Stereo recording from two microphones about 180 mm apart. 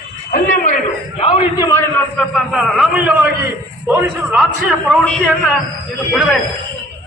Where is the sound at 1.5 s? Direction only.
15° left (ahead or behind).